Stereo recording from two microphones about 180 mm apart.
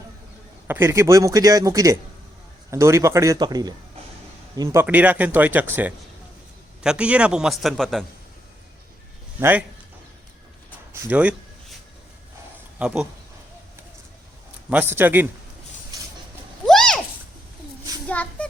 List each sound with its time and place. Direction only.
0.7 s a man's voice: 15° right (ahead or behind)
9.4 s speech: 10° right (ahead or behind)
11.0 s speech: 5° right (ahead or behind)
12.8 s a man's voice: 5° right (ahead or behind)
14.7 s speech: 10° right (ahead or behind)
16.6 s a sound: 5° left (ahead or behind)
18.1 s a sound: 10° left (ahead or behind)